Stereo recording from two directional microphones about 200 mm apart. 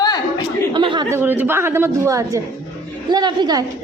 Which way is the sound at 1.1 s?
10° right (ahead or behind).